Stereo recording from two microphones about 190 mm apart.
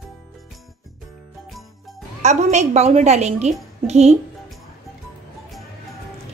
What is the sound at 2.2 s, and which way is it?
A woman's voice, 35° right (ahead or behind).